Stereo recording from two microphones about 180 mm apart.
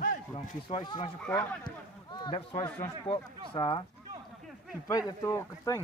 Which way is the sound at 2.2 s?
25° left (ahead or behind).